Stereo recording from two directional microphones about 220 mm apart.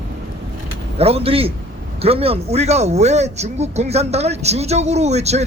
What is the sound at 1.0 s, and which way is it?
Speech, 25° right (ahead or behind).